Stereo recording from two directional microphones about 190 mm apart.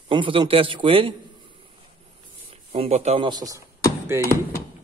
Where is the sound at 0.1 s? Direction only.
25° right (ahead or behind).